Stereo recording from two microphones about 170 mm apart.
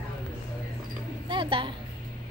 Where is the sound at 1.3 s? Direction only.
30° right (ahead or behind).